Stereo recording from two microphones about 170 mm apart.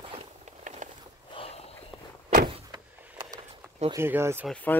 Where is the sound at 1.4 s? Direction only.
35° left (ahead or behind).